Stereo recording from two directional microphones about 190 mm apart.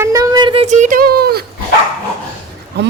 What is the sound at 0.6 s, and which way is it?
Speech, 40° right (ahead or behind).